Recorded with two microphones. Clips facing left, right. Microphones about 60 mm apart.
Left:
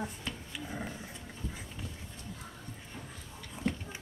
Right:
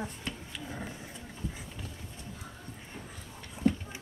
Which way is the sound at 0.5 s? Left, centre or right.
Centre.